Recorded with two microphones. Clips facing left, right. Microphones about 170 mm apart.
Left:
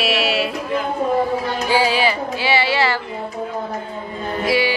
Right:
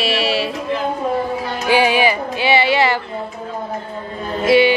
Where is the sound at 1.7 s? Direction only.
15° right (ahead or behind).